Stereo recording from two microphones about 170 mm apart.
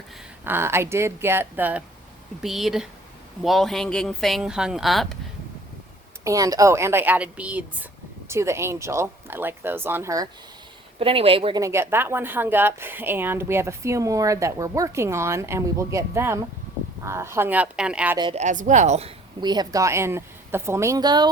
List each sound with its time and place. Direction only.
0.4 s a woman's voice: 15° right (ahead or behind)
6.2 s a woman's voice: 20° right (ahead or behind)
11.0 s speech: 35° right (ahead or behind)
11.6 s a woman's voice: 15° right (ahead or behind)
18.3 s speech: 45° right (ahead or behind)
19.4 s a woman's voice: 25° right (ahead or behind)